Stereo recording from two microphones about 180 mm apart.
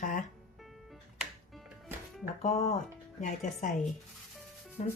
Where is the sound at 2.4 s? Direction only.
40° left (ahead or behind).